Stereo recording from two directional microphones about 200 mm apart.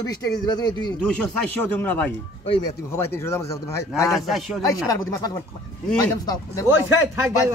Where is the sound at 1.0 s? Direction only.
5° left (ahead or behind).